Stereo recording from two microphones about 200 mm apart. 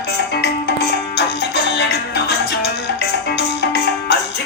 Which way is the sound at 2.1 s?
55° left (ahead or behind).